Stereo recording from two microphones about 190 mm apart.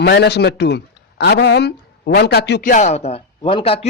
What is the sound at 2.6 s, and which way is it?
A man's voice, 40° left (ahead or behind).